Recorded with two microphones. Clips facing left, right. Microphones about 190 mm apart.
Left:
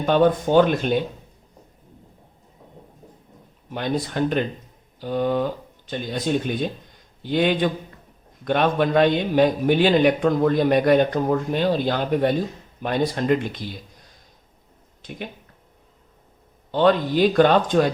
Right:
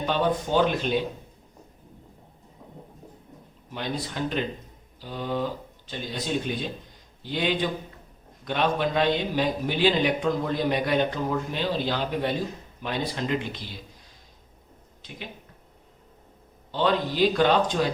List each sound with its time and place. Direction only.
0.0 s a man's voice: 55° left (ahead or behind)
3.7 s a man's voice: 55° left (ahead or behind)
15.0 s speech: 50° left (ahead or behind)
16.7 s a man's voice: 50° left (ahead or behind)